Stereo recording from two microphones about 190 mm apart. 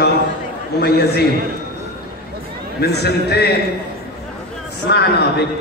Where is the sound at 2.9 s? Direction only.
60° left (ahead or behind).